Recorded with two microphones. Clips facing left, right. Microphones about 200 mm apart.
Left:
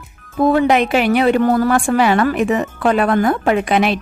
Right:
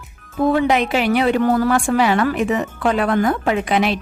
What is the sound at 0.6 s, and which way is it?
A woman's voice, 55° left (ahead or behind).